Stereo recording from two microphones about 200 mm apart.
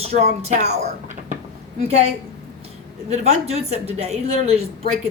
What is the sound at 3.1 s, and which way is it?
A woman's voice, 30° right (ahead or behind).